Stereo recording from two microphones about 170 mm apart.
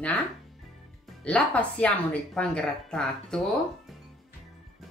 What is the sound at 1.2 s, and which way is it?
Speech, 5° left (ahead or behind).